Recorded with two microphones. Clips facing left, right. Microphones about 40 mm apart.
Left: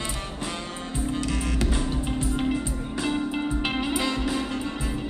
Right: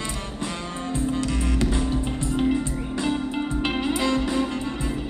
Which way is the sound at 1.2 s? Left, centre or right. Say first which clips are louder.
Right 3 dB; left.